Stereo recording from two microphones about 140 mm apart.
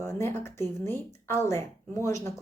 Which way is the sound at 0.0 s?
20° left (ahead or behind).